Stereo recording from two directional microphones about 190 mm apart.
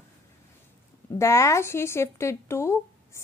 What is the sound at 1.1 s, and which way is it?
Speech, 15° left (ahead or behind).